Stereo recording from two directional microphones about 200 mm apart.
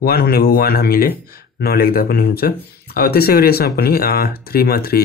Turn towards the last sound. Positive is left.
turn(degrees=50)  # may be behind; listen again after turning